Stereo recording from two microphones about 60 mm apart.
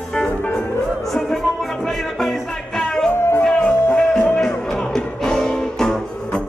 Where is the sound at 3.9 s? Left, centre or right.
Centre.